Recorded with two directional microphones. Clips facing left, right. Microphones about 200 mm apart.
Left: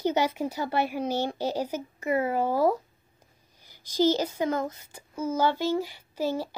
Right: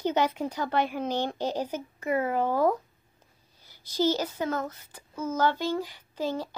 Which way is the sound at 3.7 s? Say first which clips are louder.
Left 3 dB; 15° left (ahead or behind).